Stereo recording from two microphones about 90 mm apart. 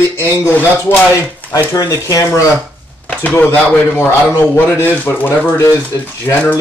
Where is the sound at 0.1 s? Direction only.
25° left (ahead or behind).